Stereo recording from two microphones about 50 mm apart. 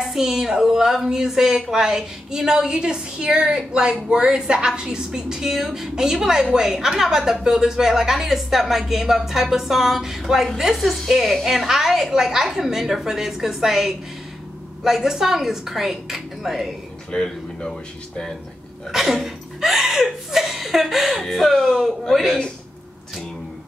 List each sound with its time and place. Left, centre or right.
0.0 s a woman's voice: centre
17.1 s speech: centre
18.9 s speech: centre